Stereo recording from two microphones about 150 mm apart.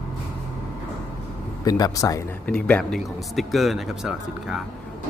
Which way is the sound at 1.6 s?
25° left (ahead or behind).